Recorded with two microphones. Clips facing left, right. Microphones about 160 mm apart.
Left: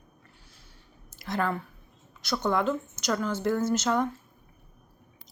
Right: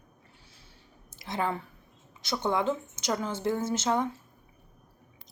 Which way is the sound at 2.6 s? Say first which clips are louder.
Left 1 dB; 20° right (ahead or behind).